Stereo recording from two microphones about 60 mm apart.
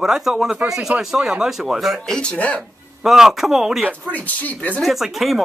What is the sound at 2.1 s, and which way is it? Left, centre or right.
Speech, centre.